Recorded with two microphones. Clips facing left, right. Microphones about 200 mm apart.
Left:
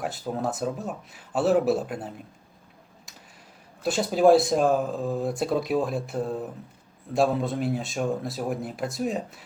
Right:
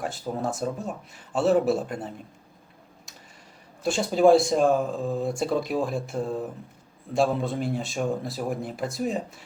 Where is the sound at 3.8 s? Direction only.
Centre (ahead or behind).